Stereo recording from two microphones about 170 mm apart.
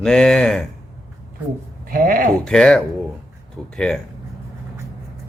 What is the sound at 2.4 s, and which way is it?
Speech, 5° left (ahead or behind).